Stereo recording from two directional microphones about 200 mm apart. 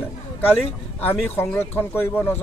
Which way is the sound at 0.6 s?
10° left (ahead or behind).